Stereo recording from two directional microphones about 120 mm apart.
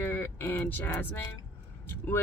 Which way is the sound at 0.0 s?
15° left (ahead or behind).